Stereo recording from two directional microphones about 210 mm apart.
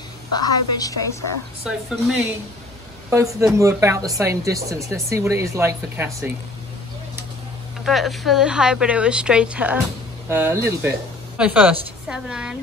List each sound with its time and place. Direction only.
0.4 s a woman's voice: 15° left (ahead or behind)
1.6 s speech: centre (ahead or behind)
3.1 s speech: 15° right (ahead or behind)
7.8 s speech: centre (ahead or behind)